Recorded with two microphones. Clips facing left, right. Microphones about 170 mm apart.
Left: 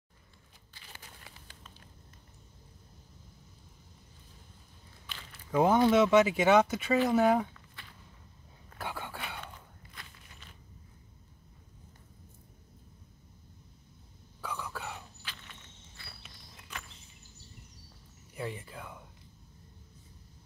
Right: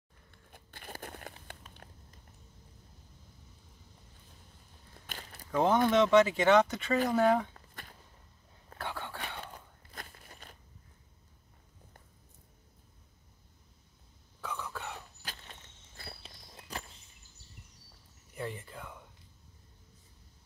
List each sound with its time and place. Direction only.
0.5 s biting: 55° right (ahead or behind)
1.0 s a sound: 60° right (ahead or behind)
5.0 s biting: 45° right (ahead or behind)
5.5 s speech: 10° left (ahead or behind)
7.5 s shuffling cards: 45° right (ahead or behind)
8.7 s whispering: 10° left (ahead or behind)
9.9 s a sound: 45° right (ahead or behind)
14.4 s whispering: 5° left (ahead or behind)
15.2 s walk: 40° right (ahead or behind)
18.3 s a sound: 5° left (ahead or behind)